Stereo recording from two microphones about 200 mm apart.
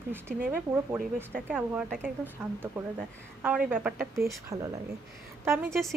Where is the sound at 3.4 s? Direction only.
5° right (ahead or behind).